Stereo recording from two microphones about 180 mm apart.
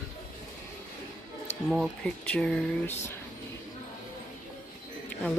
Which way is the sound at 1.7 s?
5° left (ahead or behind).